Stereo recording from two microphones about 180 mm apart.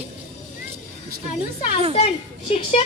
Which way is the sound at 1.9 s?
35° left (ahead or behind).